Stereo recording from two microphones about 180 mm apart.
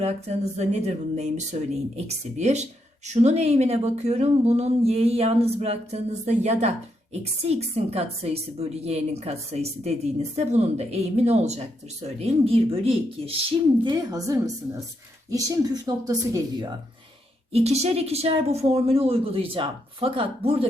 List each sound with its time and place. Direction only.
0.0 s speech: 35° right (ahead or behind)
13.8 s speech: 20° right (ahead or behind)
17.5 s speech: 35° right (ahead or behind)